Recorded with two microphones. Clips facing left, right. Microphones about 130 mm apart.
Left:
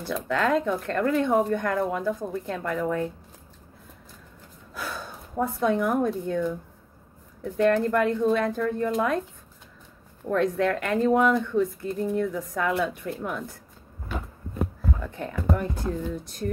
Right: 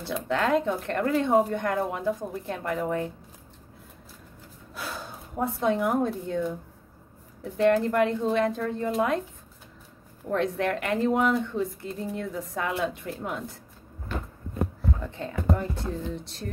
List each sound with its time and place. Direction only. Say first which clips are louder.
0.0 s speech: left 1 dB; 20° right (ahead or behind)
4.7 s gasp: left 2 dB; 25° right (ahead or behind)
5.6 s speech: left 1 dB; 25° right (ahead or behind)
7.5 s speech: even; 25° right (ahead or behind)
10.3 s speech: left 3 dB; 25° right (ahead or behind)
15.0 s speech: left 1 dB; 25° right (ahead or behind)